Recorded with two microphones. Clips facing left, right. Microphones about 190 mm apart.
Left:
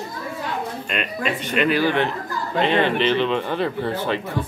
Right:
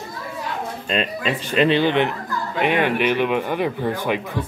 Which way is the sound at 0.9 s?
30° right (ahead or behind).